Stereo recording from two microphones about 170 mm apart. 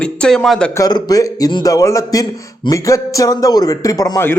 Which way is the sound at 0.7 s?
20° left (ahead or behind).